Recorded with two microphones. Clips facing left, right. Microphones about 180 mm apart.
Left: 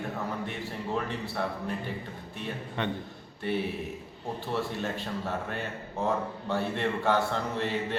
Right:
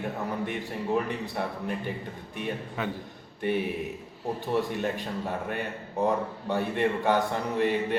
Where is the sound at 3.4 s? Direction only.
15° right (ahead or behind).